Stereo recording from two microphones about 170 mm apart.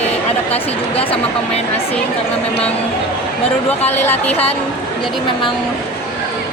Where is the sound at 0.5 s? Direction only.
35° left (ahead or behind).